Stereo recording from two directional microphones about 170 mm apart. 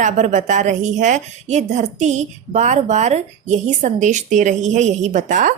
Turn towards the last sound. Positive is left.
turn(degrees=-45)  # may be behind; listen again after turning